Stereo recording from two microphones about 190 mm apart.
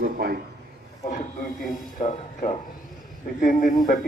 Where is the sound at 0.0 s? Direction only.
50° right (ahead or behind).